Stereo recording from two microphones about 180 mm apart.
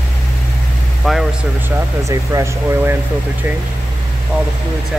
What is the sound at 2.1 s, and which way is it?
Speech, 15° right (ahead or behind).